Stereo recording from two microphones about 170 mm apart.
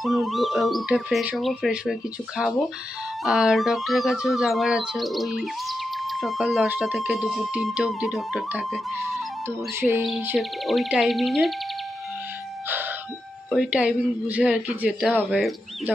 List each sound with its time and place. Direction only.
0.0 s speech: centre (ahead or behind)
9.6 s speech: 15° right (ahead or behind)
10.3 s speech: centre (ahead or behind)
12.6 s music: 10° right (ahead or behind)
13.5 s speech: 5° right (ahead or behind)